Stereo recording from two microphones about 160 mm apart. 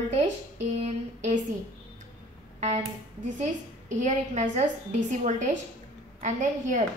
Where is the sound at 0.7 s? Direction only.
45° right (ahead or behind).